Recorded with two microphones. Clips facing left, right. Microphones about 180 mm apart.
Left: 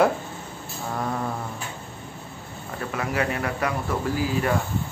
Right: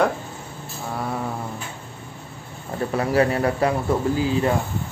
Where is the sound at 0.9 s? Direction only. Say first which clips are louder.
Even; 5° right (ahead or behind).